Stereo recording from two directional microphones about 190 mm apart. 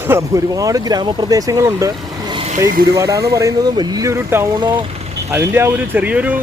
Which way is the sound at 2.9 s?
15° right (ahead or behind).